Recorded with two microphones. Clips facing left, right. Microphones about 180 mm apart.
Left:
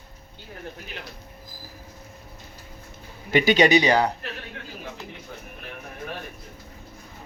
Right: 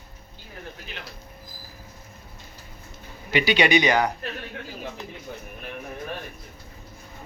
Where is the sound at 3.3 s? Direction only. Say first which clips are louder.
Left 3 dB; 45° left (ahead or behind).